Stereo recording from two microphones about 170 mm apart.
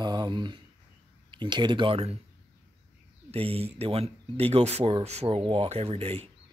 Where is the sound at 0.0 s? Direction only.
25° right (ahead or behind).